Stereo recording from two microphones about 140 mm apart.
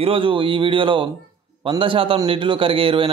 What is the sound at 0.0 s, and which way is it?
A man's voice, 40° right (ahead or behind).